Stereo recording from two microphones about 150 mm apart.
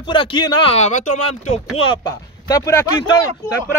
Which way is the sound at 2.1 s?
25° left (ahead or behind).